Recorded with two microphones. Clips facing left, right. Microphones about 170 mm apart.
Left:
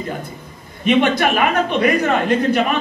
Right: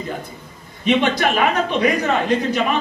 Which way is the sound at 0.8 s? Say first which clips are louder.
Left 2 dB; 55° left (ahead or behind).